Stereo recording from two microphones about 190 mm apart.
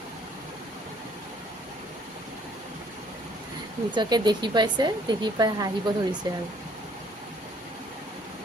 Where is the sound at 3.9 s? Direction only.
25° right (ahead or behind).